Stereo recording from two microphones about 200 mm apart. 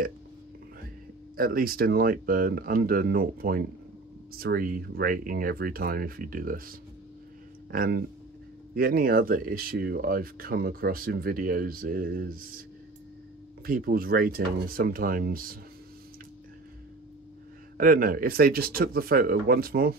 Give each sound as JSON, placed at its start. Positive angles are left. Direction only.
{"t": 1.3, "sound": "speech", "side_deg": -45}
{"t": 7.7, "sound": "speech", "side_deg": -45}
{"t": 13.7, "sound": "speech", "side_deg": -45}
{"t": 17.7, "sound": "speech", "side_deg": -45}